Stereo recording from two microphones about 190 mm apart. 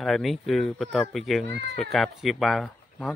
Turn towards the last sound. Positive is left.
turn(degrees=5)  # may be behind; listen again after turning